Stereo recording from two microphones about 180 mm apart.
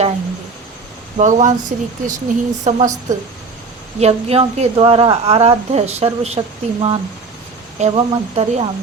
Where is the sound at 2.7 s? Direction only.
45° right (ahead or behind).